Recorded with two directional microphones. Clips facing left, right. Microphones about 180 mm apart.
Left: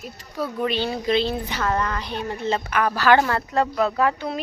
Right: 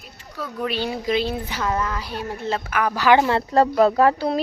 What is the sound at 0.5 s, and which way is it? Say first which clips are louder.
Speech: left 1 dB; centre (ahead or behind).